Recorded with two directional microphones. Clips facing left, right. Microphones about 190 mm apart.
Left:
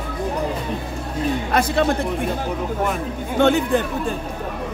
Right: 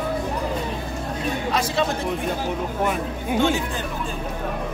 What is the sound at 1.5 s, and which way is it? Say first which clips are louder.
Speech: left 3 dB; 55° left (ahead or behind).